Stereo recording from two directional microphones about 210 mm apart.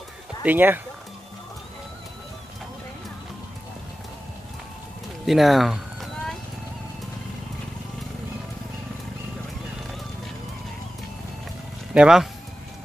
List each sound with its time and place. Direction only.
0.4 s speech: 10° right (ahead or behind)
5.2 s speech: centre (ahead or behind)
11.9 s speech: 5° right (ahead or behind)